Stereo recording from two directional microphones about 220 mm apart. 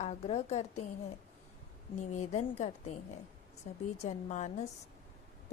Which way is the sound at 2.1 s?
35° left (ahead or behind).